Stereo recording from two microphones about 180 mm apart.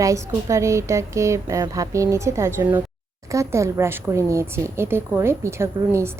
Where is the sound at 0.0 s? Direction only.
15° right (ahead or behind).